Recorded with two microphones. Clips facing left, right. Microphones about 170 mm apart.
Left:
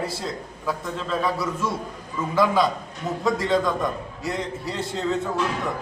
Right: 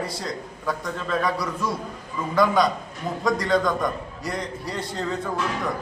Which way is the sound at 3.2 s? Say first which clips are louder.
Even; centre (ahead or behind).